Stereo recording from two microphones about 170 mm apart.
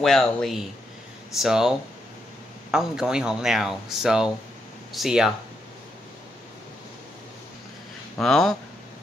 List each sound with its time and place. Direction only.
0.0 s speech: centre (ahead or behind)
8.2 s speech: centre (ahead or behind)